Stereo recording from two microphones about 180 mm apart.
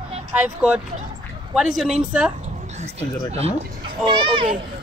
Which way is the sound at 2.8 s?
35° right (ahead or behind).